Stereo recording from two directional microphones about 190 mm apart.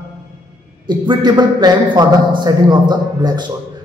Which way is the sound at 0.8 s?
20° right (ahead or behind).